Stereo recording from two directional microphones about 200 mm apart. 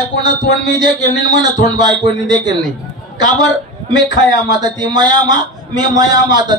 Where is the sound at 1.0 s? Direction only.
20° right (ahead or behind).